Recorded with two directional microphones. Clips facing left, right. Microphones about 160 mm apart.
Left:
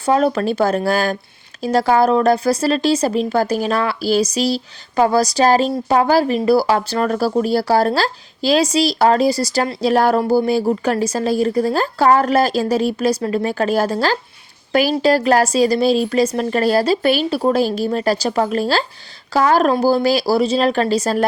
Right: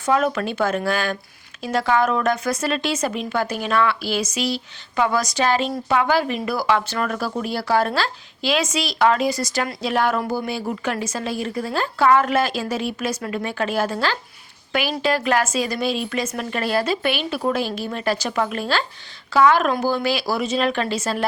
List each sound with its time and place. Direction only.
0.0 s a woman's voice: 35° left (ahead or behind)